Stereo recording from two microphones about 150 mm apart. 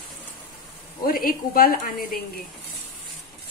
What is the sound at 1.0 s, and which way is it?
Speech, 70° left (ahead or behind).